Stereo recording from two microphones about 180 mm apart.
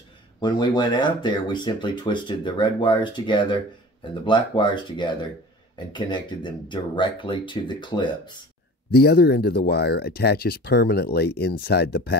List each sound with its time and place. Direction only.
0.4 s speech: 25° left (ahead or behind)
8.9 s speech: 60° left (ahead or behind)